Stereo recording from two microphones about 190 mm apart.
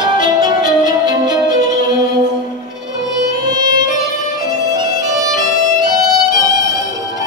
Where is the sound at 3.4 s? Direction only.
20° right (ahead or behind).